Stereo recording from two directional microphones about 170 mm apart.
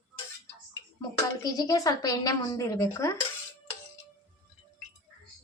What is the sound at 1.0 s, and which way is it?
Speech, 20° left (ahead or behind).